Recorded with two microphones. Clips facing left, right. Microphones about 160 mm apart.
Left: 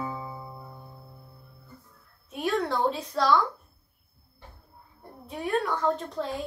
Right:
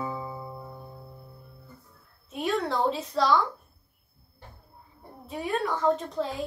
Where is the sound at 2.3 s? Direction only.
Centre (ahead or behind).